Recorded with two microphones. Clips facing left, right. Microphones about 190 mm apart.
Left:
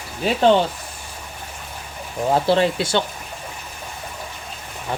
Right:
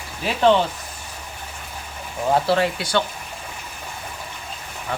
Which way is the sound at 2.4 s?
25° left (ahead or behind).